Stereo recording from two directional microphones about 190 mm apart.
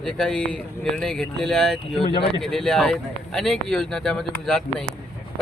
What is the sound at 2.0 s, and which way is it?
Speech, 25° left (ahead or behind).